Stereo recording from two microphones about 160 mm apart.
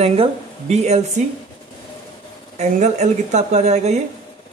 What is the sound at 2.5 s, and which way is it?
A man's voice, 45° right (ahead or behind).